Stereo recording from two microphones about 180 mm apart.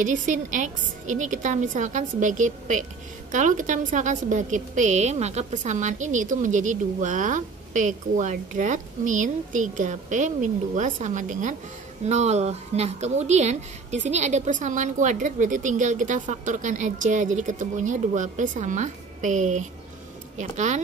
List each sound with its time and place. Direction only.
0.0 s a woman's voice: 45° right (ahead or behind)